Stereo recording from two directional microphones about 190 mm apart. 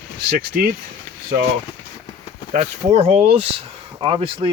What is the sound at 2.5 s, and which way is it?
Speech, 35° right (ahead or behind).